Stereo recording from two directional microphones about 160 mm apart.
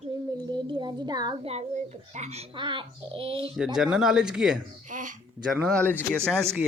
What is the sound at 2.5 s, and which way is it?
Speech, 30° right (ahead or behind).